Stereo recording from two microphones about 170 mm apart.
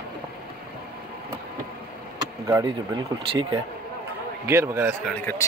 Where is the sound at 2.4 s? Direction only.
20° right (ahead or behind).